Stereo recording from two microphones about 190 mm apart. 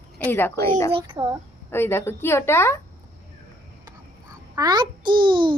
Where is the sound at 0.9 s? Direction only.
25° right (ahead or behind).